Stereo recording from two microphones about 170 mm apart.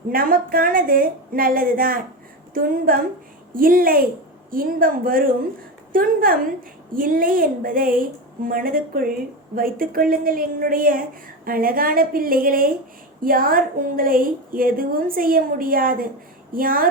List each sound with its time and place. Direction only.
0.1 s a woman's voice: 60° right (ahead or behind)